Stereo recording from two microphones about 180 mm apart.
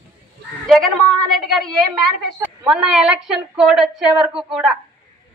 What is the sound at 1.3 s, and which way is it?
Speech, centre (ahead or behind).